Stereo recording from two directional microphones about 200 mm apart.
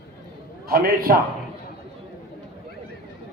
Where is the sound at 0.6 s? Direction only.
45° right (ahead or behind).